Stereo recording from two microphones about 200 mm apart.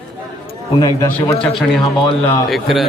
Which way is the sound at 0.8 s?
20° left (ahead or behind).